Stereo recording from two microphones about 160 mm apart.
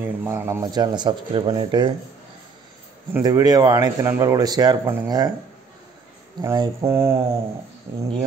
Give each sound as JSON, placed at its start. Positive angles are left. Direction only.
{"t": 0.0, "sound": "speech", "side_deg": -15}
{"t": 3.1, "sound": "speech", "side_deg": -20}
{"t": 6.4, "sound": "speech", "side_deg": -25}
{"t": 6.9, "sound": "mantra", "side_deg": -15}